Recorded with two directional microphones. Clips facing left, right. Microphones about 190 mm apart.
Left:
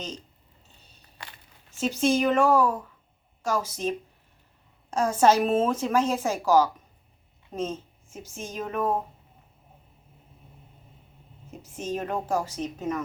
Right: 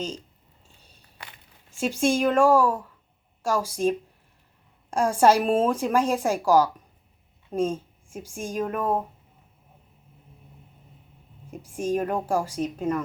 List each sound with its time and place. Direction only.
1.7 s a woman's voice: 10° right (ahead or behind)
11.5 s a woman's voice: 10° right (ahead or behind)